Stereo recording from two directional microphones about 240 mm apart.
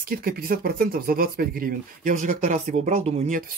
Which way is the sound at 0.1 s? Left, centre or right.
Right.